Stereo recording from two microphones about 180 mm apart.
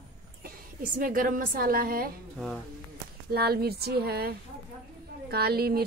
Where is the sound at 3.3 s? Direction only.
60° right (ahead or behind).